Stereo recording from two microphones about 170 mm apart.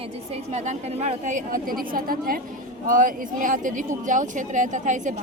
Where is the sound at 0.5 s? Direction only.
40° right (ahead or behind).